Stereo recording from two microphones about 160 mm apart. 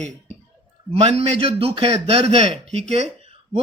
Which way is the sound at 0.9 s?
40° right (ahead or behind).